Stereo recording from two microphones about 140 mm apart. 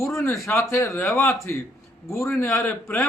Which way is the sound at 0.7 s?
15° left (ahead or behind).